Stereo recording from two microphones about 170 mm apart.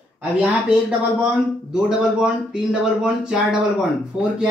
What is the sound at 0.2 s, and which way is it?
Speech, 5° right (ahead or behind).